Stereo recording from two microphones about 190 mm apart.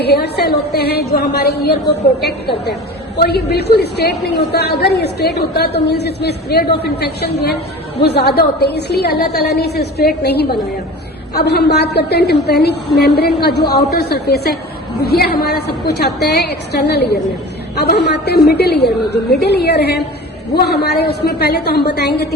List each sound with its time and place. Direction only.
0.0 s a woman's voice: 60° left (ahead or behind)